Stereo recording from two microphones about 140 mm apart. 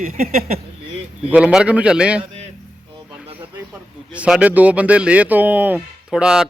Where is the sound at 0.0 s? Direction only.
55° right (ahead or behind).